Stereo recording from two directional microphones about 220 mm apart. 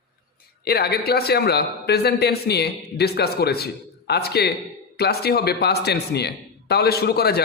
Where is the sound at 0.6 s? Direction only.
45° left (ahead or behind).